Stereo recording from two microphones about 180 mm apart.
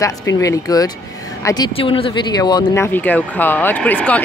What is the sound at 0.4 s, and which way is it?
Speech, 20° left (ahead or behind).